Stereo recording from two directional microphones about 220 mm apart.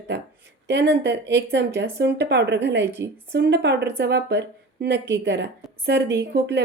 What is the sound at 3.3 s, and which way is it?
A woman's voice, 50° right (ahead or behind).